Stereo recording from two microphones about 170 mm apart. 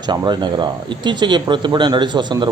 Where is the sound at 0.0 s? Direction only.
25° right (ahead or behind).